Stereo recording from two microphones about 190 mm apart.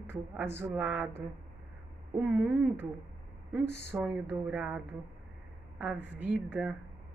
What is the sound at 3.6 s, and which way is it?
Speech, 65° left (ahead or behind).